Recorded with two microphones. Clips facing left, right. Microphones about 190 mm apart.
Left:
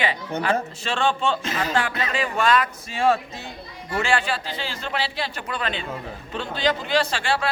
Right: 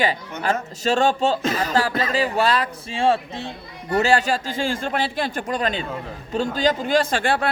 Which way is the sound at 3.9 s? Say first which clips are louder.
Right 5 dB; 40° right (ahead or behind).